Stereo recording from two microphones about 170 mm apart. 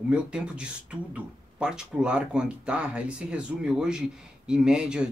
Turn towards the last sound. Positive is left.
turn(degrees=-5)  # may be behind; listen again after turning